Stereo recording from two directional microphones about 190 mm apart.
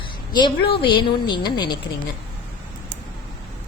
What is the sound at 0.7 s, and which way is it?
Speech, 25° left (ahead or behind).